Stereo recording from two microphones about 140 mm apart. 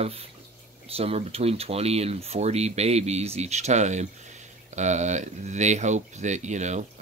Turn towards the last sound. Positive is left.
turn(degrees=-55)  # may be behind; listen again after turning